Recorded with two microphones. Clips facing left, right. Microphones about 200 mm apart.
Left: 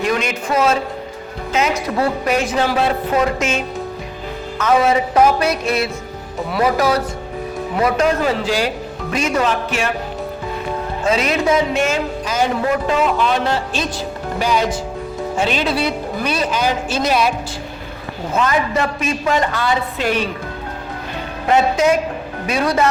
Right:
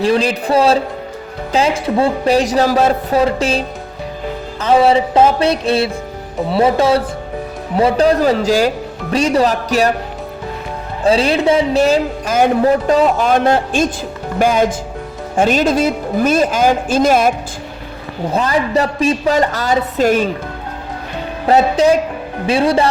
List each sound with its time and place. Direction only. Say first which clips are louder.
0.0 s speech: right 5 dB; 30° right (ahead or behind)
4.5 s music: right 3 dB; 30° right (ahead or behind)
7.8 s speech: right 5 dB; 30° right (ahead or behind)
11.0 s speech: right 5 dB; 30° right (ahead or behind); by 17.3 s 50° right (ahead or behind)
18.3 s speech: right 2 dB; 35° right (ahead or behind)
21.4 s speech: right 3 dB; 30° right (ahead or behind)
22.4 s music: right 4 dB; 30° right (ahead or behind)